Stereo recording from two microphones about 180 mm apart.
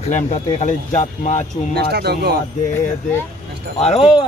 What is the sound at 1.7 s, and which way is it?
Speech, 65° right (ahead or behind).